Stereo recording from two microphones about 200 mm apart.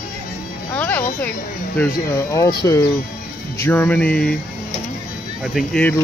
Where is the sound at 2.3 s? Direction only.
15° left (ahead or behind).